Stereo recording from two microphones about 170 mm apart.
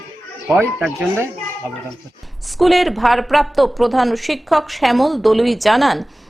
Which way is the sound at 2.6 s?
Centre (ahead or behind).